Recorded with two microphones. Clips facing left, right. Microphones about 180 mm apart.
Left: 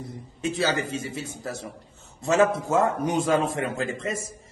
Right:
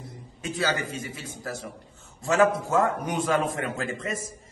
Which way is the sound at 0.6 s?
25° left (ahead or behind).